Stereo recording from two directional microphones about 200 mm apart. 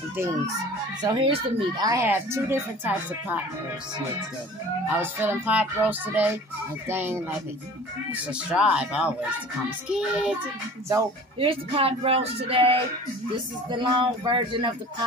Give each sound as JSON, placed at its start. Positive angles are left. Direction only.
{"t": 1.0, "sound": "speech", "side_deg": -25}
{"t": 5.0, "sound": "speech", "side_deg": -10}
{"t": 11.3, "sound": "speech", "side_deg": -25}